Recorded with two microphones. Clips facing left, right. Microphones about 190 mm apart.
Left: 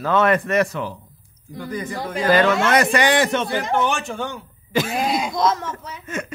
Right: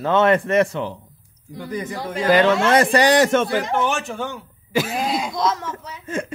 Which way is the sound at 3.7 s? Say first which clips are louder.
Even; 5° right (ahead or behind).